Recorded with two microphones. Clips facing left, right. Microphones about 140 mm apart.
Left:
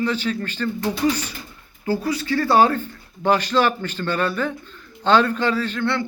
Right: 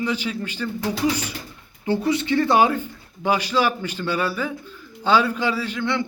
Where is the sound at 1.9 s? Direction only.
25° right (ahead or behind).